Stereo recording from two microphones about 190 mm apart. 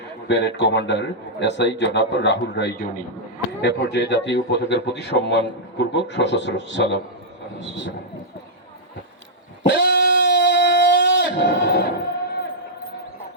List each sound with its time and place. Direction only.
0.3 s a man's voice: 65° left (ahead or behind)
3.6 s a man's voice: 65° left (ahead or behind)
9.6 s a sound: 65° left (ahead or behind)